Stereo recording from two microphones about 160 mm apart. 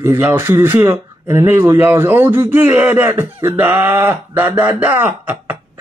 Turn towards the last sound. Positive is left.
turn(degrees=-10)  # may be behind; listen again after turning